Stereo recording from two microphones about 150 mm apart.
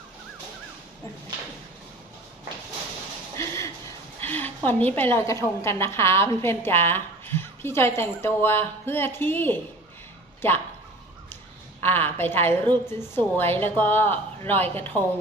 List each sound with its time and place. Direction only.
3.3 s a sound: 20° left (ahead or behind)
4.2 s a woman's voice: 10° left (ahead or behind)
11.8 s a woman's voice: 15° left (ahead or behind)